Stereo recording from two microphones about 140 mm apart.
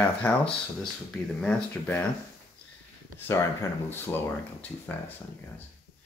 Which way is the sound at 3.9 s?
15° left (ahead or behind).